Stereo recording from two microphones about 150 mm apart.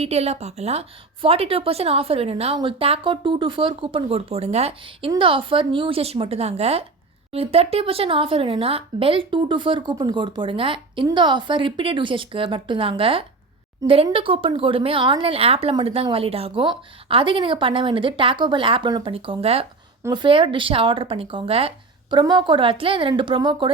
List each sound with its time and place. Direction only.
0.0 s a woman's voice: 45° right (ahead or behind)